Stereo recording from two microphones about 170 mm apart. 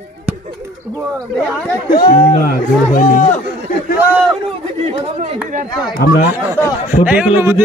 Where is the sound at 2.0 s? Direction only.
55° left (ahead or behind).